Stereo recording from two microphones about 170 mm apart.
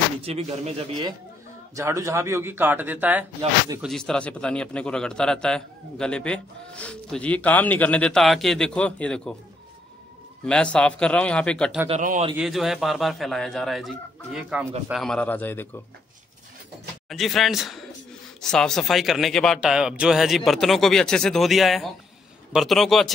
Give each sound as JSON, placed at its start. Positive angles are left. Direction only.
{"t": 0.2, "sound": "speech", "side_deg": -35}
{"t": 1.8, "sound": "a man's voice", "side_deg": -20}
{"t": 3.8, "sound": "a man's voice", "side_deg": 5}
{"t": 10.4, "sound": "a man's voice", "side_deg": 5}
{"t": 12.0, "sound": "a man's voice", "side_deg": -50}
{"t": 12.4, "sound": "a man's voice", "side_deg": 0}
{"t": 17.1, "sound": "a man's voice", "side_deg": 0}